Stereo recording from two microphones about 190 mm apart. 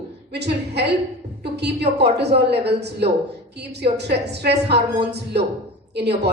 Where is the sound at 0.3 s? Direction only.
60° right (ahead or behind).